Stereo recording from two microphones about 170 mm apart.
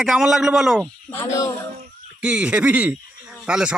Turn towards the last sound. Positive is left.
turn(degrees=-5)  # may be behind; listen again after turning